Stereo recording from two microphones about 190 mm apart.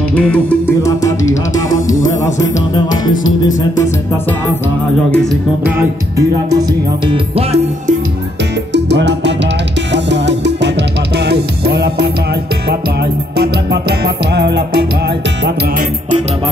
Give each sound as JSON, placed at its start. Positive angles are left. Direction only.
{"t": 0.1, "sound": "music", "side_deg": 5}
{"t": 5.1, "sound": "music", "side_deg": 0}
{"t": 5.6, "sound": "music", "side_deg": -10}
{"t": 7.1, "sound": "music", "side_deg": -30}
{"t": 8.7, "sound": "music", "side_deg": -65}